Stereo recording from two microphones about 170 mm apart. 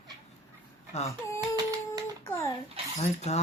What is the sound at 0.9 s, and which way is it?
Speech, 40° left (ahead or behind).